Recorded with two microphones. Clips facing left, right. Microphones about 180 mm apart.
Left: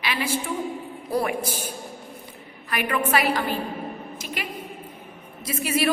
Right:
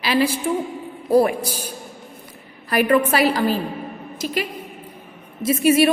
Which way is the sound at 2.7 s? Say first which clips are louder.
Right 7 dB; 35° right (ahead or behind).